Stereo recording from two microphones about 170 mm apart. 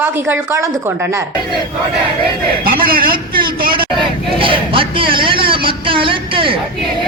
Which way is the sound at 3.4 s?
60° right (ahead or behind).